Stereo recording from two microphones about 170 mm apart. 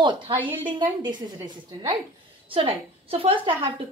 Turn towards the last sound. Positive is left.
turn(degrees=-30)  # may be behind; listen again after turning